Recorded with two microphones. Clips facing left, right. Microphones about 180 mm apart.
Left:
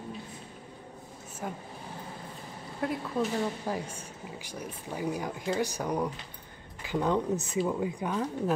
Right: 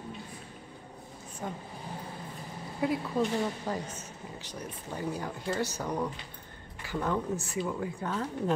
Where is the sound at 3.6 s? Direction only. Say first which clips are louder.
Left 1 dB; 10° left (ahead or behind).